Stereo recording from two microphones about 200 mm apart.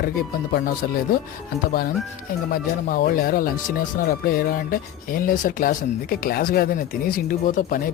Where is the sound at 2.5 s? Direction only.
45° left (ahead or behind).